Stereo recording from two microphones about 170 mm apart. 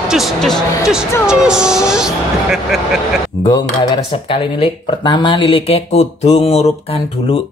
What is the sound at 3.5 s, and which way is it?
Speech, 25° left (ahead or behind).